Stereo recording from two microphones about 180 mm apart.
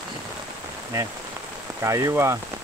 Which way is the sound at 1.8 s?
15° right (ahead or behind).